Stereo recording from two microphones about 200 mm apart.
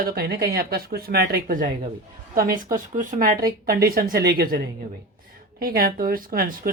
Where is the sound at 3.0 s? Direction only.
45° right (ahead or behind).